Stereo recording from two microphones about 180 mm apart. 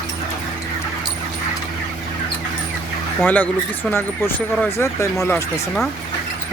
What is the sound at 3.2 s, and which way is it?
Speech, 10° left (ahead or behind).